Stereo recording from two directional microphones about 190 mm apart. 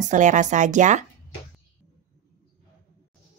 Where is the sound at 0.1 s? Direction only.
40° right (ahead or behind).